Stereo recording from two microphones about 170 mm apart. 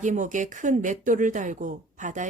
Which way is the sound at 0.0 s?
45° right (ahead or behind).